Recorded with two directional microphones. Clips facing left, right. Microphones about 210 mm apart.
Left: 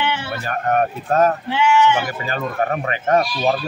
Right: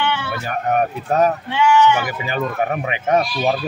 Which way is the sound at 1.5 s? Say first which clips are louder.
Right 1 dB; 25° left (ahead or behind).